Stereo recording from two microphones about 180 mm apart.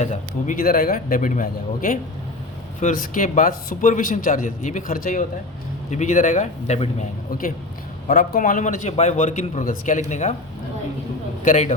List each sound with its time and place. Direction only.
0.0 s a man's voice: 45° left (ahead or behind)
8.0 s a man's voice: 45° left (ahead or behind)
11.4 s a man's voice: 40° left (ahead or behind)